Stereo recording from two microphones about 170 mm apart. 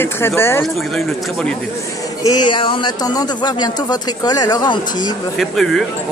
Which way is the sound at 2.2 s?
25° left (ahead or behind).